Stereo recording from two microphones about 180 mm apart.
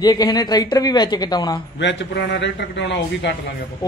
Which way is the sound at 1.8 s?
80° left.